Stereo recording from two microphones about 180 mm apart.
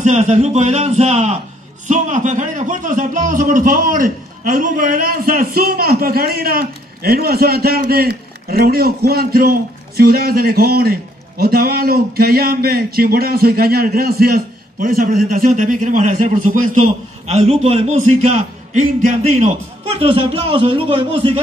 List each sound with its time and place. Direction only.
0.0 s a man's voice: 40° right (ahead or behind)